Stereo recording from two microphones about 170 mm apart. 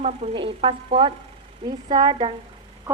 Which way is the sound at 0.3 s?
30° right (ahead or behind).